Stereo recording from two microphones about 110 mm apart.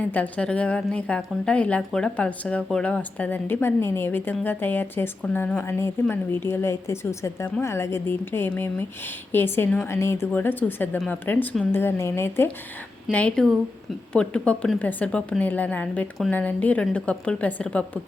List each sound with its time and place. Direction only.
0.0 s a woman's voice: 15° left (ahead or behind)
13.1 s a woman's voice: 10° left (ahead or behind)